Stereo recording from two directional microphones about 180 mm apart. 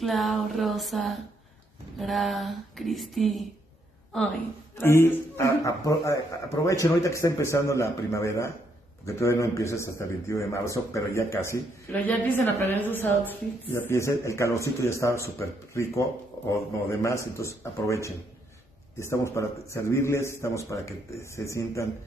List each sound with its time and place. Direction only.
0.0 s speech: centre (ahead or behind)
4.7 s speech: 15° left (ahead or behind)